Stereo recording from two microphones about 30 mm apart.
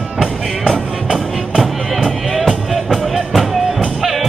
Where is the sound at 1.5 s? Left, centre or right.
Centre.